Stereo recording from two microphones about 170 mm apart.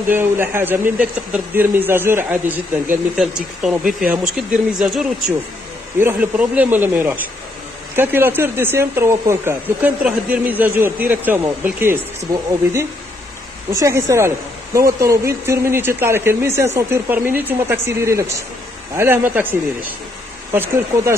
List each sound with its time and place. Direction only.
0.1 s speech: 15° right (ahead or behind)
13.7 s speech: 15° right (ahead or behind)